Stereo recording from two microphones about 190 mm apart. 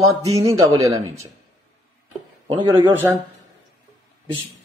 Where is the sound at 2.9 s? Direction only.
10° right (ahead or behind).